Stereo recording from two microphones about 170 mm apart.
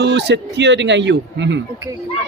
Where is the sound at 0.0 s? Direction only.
90° right.